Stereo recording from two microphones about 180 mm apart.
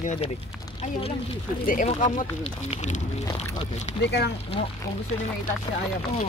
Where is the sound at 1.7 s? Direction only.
45° left (ahead or behind).